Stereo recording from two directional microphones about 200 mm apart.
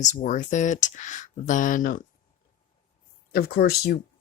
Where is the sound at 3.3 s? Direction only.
50° left (ahead or behind).